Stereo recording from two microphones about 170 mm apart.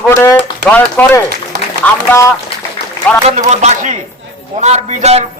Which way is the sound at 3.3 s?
45° right (ahead or behind).